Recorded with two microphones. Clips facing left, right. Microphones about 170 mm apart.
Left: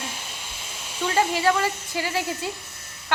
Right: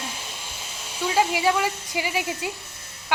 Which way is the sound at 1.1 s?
10° right (ahead or behind).